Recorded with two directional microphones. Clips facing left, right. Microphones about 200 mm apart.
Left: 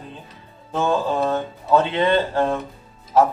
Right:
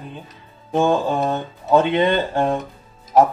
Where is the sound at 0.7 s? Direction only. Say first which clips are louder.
Right 3 dB; 15° right (ahead or behind).